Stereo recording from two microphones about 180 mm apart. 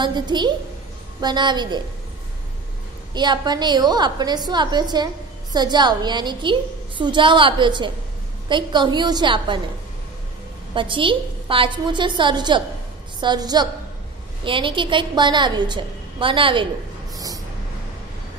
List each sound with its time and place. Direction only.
0.0 s a woman's voice: 25° right (ahead or behind)
3.2 s a woman's voice: 25° right (ahead or behind)
10.7 s a woman's voice: 30° right (ahead or behind)